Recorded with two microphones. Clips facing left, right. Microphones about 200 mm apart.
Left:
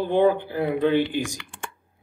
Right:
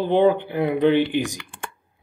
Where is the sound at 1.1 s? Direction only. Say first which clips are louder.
Right 4 dB; 60° right (ahead or behind).